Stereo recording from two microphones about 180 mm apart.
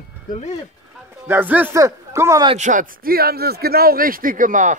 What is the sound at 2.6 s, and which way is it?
Speech, 45° right (ahead or behind).